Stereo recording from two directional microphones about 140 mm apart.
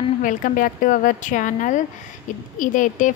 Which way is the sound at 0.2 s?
75° left (ahead or behind).